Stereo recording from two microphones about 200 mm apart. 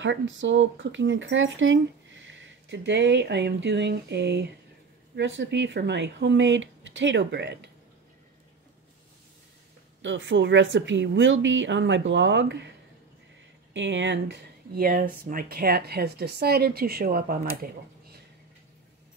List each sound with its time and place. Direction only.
0.0 s speech: 70° right (ahead or behind)
10.0 s speech: 70° right (ahead or behind)
13.7 s speech: 65° right (ahead or behind); by 17.6 s 50° right (ahead or behind)